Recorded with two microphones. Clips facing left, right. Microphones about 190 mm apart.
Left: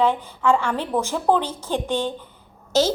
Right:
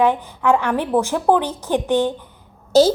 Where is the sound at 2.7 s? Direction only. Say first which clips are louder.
Right 6 dB; 35° right (ahead or behind).